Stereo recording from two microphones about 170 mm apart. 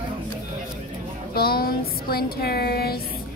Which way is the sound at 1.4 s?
65° left (ahead or behind).